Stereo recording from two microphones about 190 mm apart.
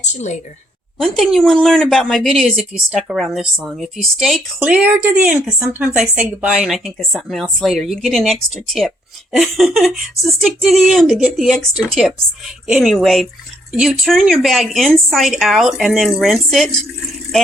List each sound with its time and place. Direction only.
0.0 s a woman's voice: 40° left (ahead or behind)
0.9 s speech: centre (ahead or behind)